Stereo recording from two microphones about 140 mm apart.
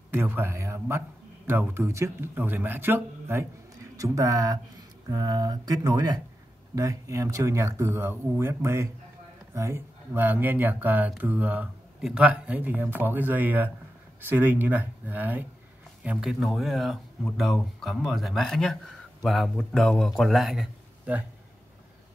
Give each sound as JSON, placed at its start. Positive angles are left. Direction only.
{"t": 0.1, "sound": "speech", "side_deg": -15}